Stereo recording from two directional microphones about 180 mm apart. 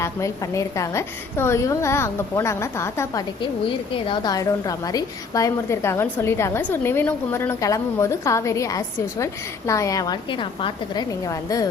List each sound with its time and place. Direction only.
0.0 s a woman's voice: 15° left (ahead or behind)
3.9 s a woman's voice: 25° left (ahead or behind)